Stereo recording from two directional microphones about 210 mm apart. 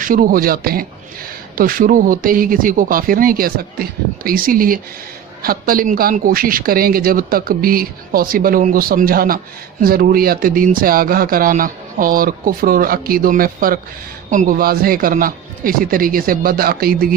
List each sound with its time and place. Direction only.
0.0 s speech: 40° right (ahead or behind)